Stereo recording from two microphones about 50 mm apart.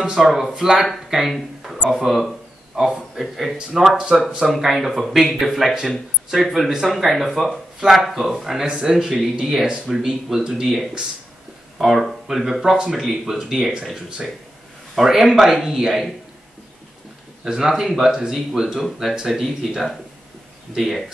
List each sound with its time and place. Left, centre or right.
0.2 s speech: centre
17.5 s speech: centre